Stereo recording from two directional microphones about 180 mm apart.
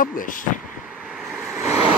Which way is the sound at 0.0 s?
50° left (ahead or behind).